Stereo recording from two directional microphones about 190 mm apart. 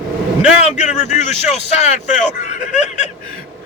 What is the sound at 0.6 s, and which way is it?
A man's voice, 35° left (ahead or behind).